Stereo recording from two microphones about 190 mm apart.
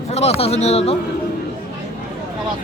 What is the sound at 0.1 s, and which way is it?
Speech, 35° left (ahead or behind).